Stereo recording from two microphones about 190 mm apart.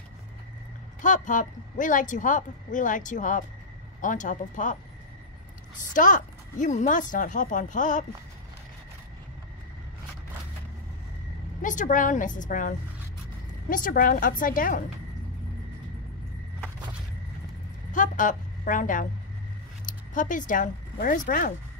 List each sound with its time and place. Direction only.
1.0 s speech: 40° left (ahead or behind)
5.8 s speech: 45° left (ahead or behind)
11.6 s speech: 45° left (ahead or behind)
17.9 s a woman's voice: 45° left (ahead or behind)